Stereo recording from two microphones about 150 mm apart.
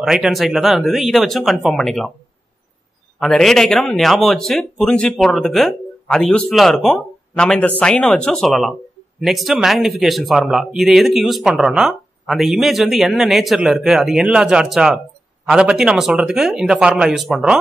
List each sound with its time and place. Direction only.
0.0 s speech: centre (ahead or behind)
3.2 s speech: centre (ahead or behind)